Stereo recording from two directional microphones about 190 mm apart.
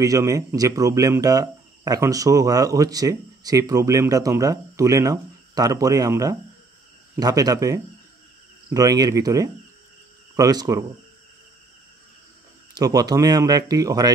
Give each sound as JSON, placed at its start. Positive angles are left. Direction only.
{"t": 0.0, "sound": "speech", "side_deg": -15}
{"t": 12.7, "sound": "speech", "side_deg": -20}